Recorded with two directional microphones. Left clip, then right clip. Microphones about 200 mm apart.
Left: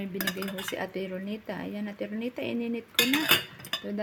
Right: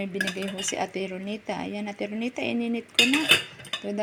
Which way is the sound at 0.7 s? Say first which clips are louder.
Right 5 dB; 5° right (ahead or behind).